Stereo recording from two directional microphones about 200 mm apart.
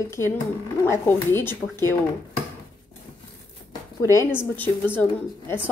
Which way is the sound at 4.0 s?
15° left (ahead or behind).